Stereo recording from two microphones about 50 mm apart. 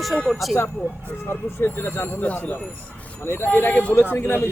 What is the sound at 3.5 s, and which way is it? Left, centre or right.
Speech, left.